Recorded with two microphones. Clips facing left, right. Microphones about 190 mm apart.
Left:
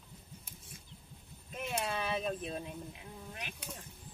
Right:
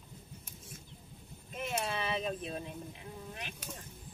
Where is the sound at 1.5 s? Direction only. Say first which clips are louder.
Right 1 dB; 10° left (ahead or behind).